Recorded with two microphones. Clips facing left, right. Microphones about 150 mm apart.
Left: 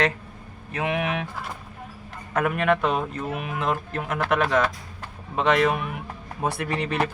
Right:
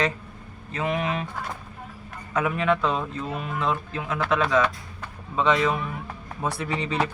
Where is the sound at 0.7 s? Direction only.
60° left (ahead or behind).